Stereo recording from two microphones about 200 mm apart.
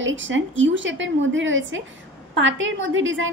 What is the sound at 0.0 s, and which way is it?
A woman's voice, 70° right (ahead or behind).